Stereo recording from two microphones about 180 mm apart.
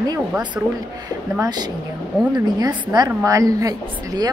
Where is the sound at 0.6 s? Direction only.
10° right (ahead or behind).